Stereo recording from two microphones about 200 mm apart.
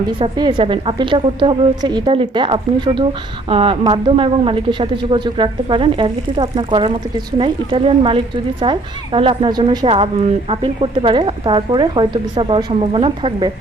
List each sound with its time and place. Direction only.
0.2 s a woman's voice: 25° right (ahead or behind)